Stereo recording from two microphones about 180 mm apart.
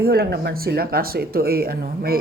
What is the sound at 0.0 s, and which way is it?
Speech, 60° right (ahead or behind).